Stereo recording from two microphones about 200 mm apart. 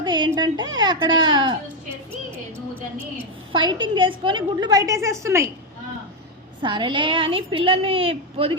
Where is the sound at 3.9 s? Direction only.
25° right (ahead or behind).